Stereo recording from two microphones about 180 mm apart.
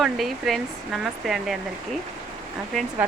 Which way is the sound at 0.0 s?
Centre (ahead or behind).